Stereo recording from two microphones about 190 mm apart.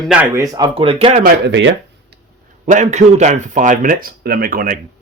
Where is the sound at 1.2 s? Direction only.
70° right (ahead or behind).